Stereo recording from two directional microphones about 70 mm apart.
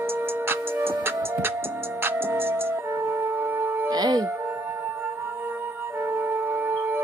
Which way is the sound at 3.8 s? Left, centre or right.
Right.